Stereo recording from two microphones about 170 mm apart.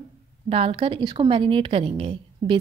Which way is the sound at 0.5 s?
35° right (ahead or behind).